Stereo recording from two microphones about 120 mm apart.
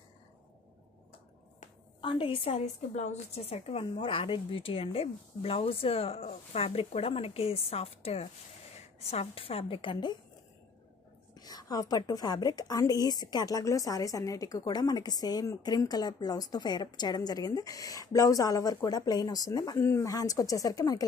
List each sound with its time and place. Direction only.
2.0 s a woman's voice: 45° left (ahead or behind)
2.6 s a woman's voice: 75° left (ahead or behind); by 10.1 s 40° left (ahead or behind)
11.3 s a woman's voice: 35° left (ahead or behind)